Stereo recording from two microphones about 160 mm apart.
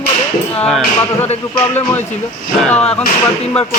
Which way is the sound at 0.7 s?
5° left (ahead or behind).